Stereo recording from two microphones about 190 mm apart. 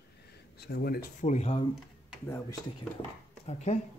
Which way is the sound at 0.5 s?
60° left (ahead or behind).